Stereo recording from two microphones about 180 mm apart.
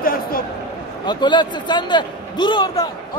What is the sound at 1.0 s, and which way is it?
A man's voice, 25° left (ahead or behind).